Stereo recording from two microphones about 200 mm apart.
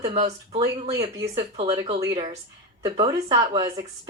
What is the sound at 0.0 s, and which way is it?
Speech, 30° right (ahead or behind).